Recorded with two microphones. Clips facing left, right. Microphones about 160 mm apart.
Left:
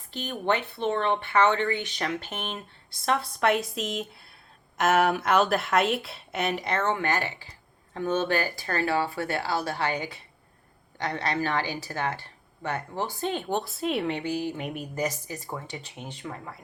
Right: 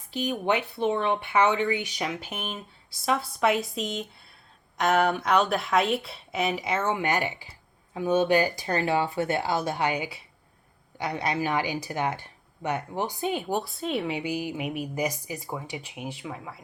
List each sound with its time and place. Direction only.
0.1 s speech: 10° right (ahead or behind)